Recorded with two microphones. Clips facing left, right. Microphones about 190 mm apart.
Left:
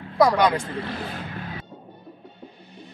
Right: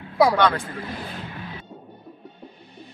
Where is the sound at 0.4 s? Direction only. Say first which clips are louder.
Even; 15° left (ahead or behind).